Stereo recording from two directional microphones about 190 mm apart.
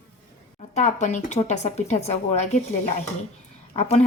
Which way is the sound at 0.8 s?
40° left (ahead or behind).